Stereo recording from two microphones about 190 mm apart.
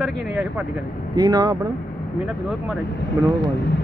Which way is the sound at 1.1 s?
20° right (ahead or behind).